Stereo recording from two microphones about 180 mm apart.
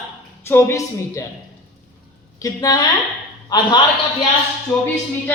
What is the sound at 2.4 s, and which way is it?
A woman's voice, 20° left (ahead or behind).